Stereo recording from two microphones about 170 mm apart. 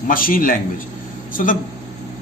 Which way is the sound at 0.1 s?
55° left (ahead or behind).